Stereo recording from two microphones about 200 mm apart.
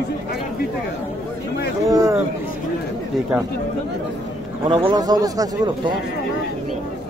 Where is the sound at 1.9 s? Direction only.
15° right (ahead or behind).